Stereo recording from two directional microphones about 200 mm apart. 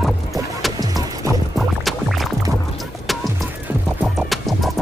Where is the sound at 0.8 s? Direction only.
20° right (ahead or behind).